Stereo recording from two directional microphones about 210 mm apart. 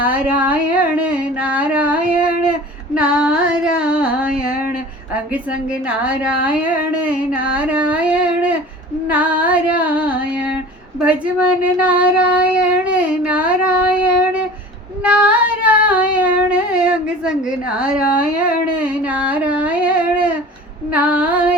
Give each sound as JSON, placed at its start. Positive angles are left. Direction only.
{"t": 0.0, "sound": "a sound", "side_deg": -5}
{"t": 2.9, "sound": "female singing", "side_deg": -5}
{"t": 11.0, "sound": "speech", "side_deg": -5}
{"t": 15.0, "sound": "child singing", "side_deg": -5}
{"t": 20.9, "sound": "female singing", "side_deg": -5}